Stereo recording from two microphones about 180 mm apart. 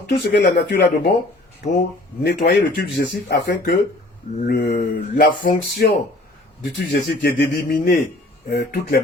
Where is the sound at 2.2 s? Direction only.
65° left (ahead or behind).